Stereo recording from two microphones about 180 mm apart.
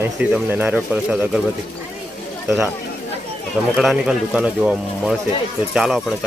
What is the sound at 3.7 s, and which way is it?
Speech, 5° right (ahead or behind).